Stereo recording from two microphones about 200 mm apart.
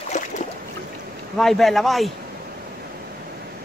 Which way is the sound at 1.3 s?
Centre (ahead or behind).